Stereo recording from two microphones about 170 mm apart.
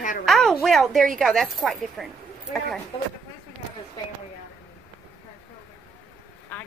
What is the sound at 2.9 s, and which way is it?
Speech, 25° left (ahead or behind).